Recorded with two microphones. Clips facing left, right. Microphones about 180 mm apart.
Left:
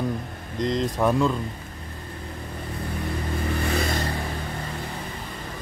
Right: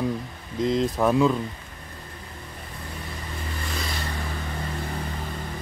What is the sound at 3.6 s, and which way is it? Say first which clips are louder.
Vehicle: left 7 dB; 60° left (ahead or behind).